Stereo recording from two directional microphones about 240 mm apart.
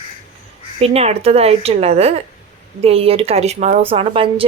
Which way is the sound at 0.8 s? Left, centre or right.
Right.